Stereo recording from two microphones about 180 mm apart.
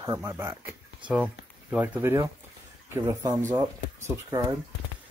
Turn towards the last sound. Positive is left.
turn(degrees=-15)  # may be behind; listen again after turning